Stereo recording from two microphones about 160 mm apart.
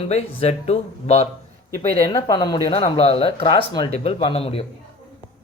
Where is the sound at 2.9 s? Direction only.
35° left (ahead or behind).